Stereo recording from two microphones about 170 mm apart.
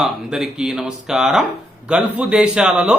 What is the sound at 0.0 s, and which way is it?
A man's voice, 5° right (ahead or behind).